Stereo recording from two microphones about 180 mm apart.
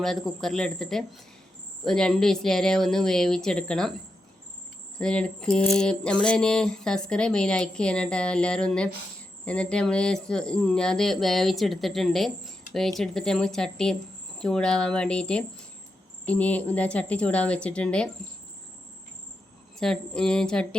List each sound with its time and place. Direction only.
0.0 s speech: centre (ahead or behind)
4.9 s speech: 5° left (ahead or behind)
19.8 s speech: 5° left (ahead or behind)